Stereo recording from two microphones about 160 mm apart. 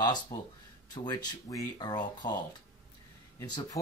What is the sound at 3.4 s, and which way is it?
Speech, 25° left (ahead or behind).